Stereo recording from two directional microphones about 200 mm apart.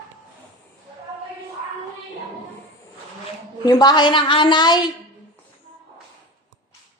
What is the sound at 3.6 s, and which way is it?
A woman's voice, 20° left (ahead or behind).